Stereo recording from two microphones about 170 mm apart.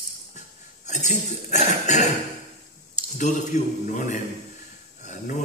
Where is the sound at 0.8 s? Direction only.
45° left (ahead or behind).